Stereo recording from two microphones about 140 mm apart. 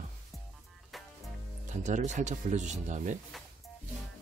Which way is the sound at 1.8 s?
60° right (ahead or behind).